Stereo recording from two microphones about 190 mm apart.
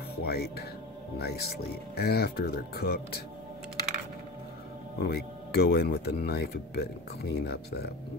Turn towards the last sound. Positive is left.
turn(degrees=60)  # may be behind; listen again after turning